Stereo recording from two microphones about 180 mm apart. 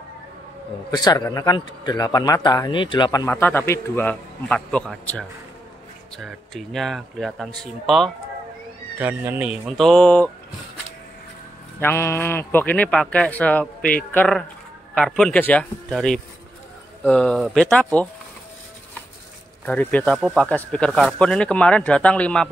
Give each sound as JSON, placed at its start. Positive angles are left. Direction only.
{"t": 0.9, "sound": "a man's voice", "side_deg": 20}
{"t": 8.9, "sound": "speech", "side_deg": -10}
{"t": 11.8, "sound": "speech", "side_deg": 15}
{"t": 19.6, "sound": "speech", "side_deg": 10}